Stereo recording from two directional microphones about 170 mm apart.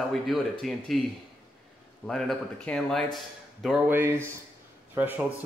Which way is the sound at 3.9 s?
15° right (ahead or behind).